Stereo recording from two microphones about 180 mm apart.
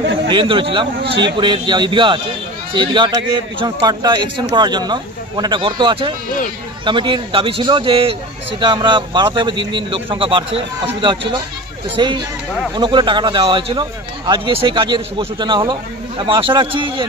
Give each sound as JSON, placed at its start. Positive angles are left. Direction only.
{"t": 0.3, "sound": "speech", "side_deg": -30}